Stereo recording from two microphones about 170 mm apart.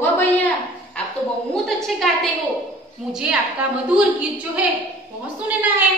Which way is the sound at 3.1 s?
5° right (ahead or behind).